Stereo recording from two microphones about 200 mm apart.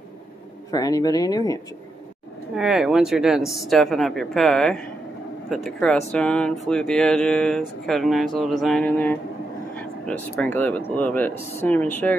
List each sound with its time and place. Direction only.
0.7 s speech: 20° left (ahead or behind)
2.5 s speech: 5° right (ahead or behind)